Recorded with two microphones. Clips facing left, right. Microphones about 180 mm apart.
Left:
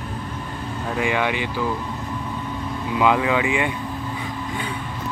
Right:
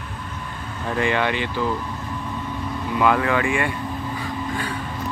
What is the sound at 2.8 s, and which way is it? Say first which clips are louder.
Vehicle: even; 10° left (ahead or behind).